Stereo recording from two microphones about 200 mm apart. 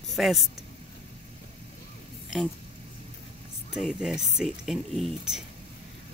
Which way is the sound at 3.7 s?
5° right (ahead or behind).